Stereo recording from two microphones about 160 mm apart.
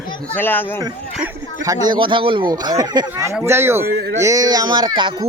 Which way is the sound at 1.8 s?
30° right (ahead or behind).